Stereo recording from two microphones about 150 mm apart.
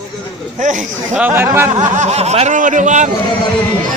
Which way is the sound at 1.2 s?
15° right (ahead or behind).